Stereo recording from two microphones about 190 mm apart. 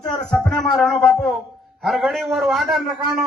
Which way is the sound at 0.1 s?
5° left (ahead or behind).